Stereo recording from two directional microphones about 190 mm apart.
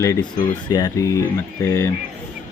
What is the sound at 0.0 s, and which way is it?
Speech, 15° left (ahead or behind).